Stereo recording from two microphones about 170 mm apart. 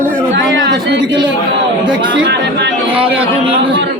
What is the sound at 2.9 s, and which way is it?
Speech, 30° right (ahead or behind).